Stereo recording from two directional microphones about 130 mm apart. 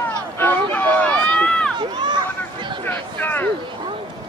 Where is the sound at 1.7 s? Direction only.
35° right (ahead or behind).